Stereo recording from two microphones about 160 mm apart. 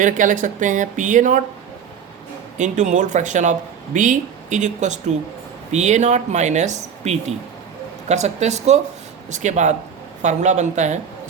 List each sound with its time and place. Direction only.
0.0 s speech: 55° right (ahead or behind)
2.6 s speech: 50° right (ahead or behind)